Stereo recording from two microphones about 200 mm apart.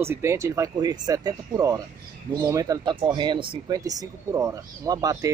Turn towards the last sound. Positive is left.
turn(degrees=-15)  # may be behind; listen again after turning